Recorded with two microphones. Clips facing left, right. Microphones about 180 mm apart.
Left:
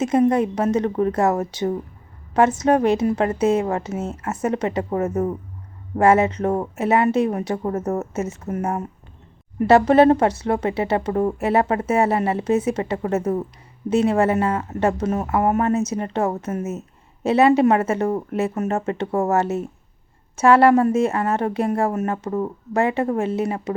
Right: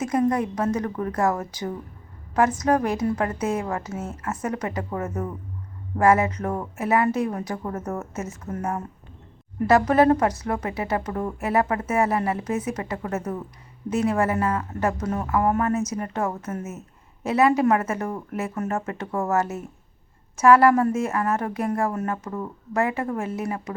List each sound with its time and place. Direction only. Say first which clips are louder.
0.0 s speech: left 5 dB; 25° left (ahead or behind)